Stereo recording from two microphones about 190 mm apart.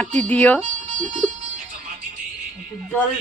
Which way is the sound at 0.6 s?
40° right (ahead or behind).